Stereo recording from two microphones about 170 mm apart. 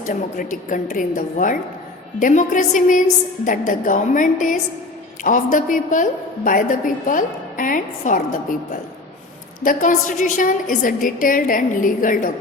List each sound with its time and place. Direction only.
0.0 s a woman's voice: 50° left (ahead or behind)
9.6 s a woman's voice: 50° left (ahead or behind)